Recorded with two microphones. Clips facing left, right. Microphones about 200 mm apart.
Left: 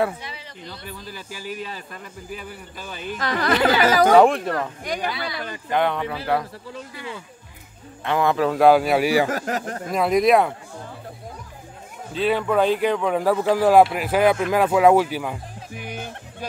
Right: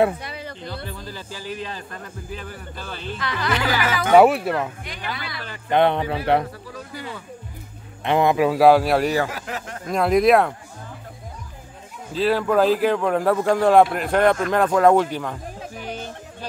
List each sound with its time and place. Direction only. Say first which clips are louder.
0.2 s a sound: right 4 dB; 50° right (ahead or behind)
0.8 s speech: right 2 dB; 10° left (ahead or behind)
3.2 s speech: left 5 dB; 40° left (ahead or behind)
4.2 s speech: right 1 dB; 10° right (ahead or behind)
4.8 s speech: left 7 dB; 45° left (ahead or behind)
5.7 s speech: right 4 dB; 25° right (ahead or behind)
8.0 s a man's voice: right 2 dB; 20° right (ahead or behind); by 9.3 s 10° left (ahead or behind)
9.3 s speech: left 6 dB; 40° left (ahead or behind)
9.8 s a man's voice: right 1 dB; centre (ahead or behind)
12.1 s a man's voice: right 1 dB; centre (ahead or behind)
15.9 s music: right 1 dB; 10° left (ahead or behind)